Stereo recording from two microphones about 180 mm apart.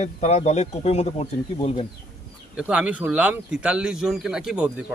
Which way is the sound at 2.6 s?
5° right (ahead or behind).